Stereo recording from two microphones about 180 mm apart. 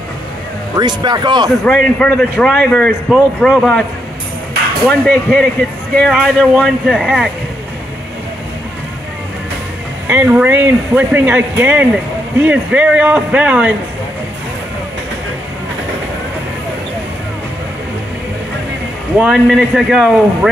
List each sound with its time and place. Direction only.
0.7 s speech: 25° right (ahead or behind)
1.6 s a man's voice: 5° left (ahead or behind)
4.8 s a man's voice: 5° left (ahead or behind)
10.0 s speech: 10° right (ahead or behind)
19.1 s a man's voice: 5° right (ahead or behind)